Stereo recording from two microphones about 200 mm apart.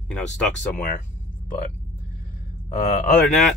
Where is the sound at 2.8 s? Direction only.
45° left (ahead or behind).